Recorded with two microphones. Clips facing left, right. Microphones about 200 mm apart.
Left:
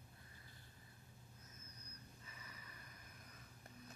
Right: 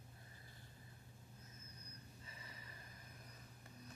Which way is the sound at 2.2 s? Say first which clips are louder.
Right 1 dB; 25° right (ahead or behind).